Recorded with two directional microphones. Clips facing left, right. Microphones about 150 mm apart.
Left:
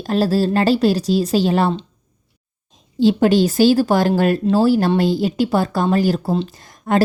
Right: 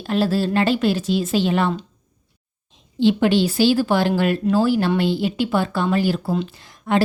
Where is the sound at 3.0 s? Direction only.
40° left (ahead or behind).